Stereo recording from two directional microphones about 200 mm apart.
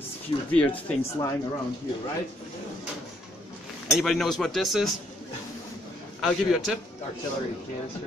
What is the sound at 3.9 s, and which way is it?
Speech, centre (ahead or behind).